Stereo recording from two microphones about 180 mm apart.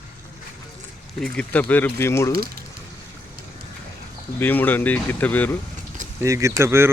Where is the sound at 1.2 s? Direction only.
5° left (ahead or behind).